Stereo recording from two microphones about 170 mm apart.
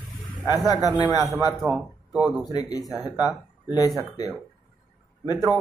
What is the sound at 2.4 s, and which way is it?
Speech, 20° left (ahead or behind).